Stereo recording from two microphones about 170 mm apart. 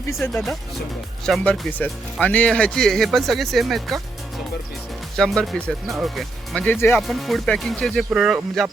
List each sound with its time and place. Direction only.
0.1 s speech: 15° left (ahead or behind)
5.1 s speech: centre (ahead or behind)
7.1 s speech: centre (ahead or behind)